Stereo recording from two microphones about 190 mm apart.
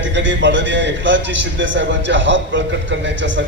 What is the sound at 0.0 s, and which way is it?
A man's voice, 70° right (ahead or behind).